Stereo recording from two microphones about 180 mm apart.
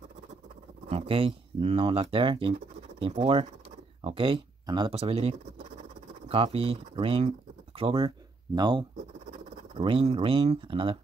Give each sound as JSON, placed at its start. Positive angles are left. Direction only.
{"t": 0.8, "sound": "speech", "side_deg": -30}